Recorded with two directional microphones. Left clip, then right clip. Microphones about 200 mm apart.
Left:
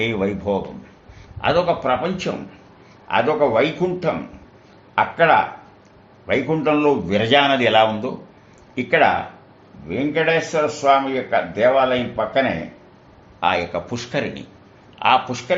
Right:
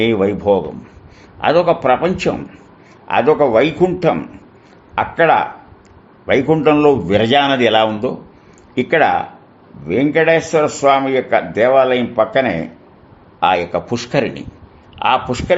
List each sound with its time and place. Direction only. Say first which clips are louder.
0.0 s a man's voice: right 7 dB; 40° right (ahead or behind); by 12.5 s 65° right (ahead or behind)
13.4 s a man's voice: right 5 dB; 45° right (ahead or behind)
14.9 s a sound: right 1 dB; 40° right (ahead or behind)
15.3 s a man's voice: right 6 dB; 50° right (ahead or behind)